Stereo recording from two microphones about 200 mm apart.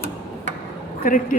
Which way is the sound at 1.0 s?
40° left (ahead or behind).